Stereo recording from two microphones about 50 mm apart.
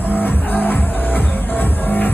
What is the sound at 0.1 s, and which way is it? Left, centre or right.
Music, left.